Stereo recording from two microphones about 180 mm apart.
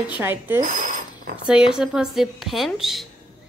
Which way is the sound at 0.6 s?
45° right (ahead or behind).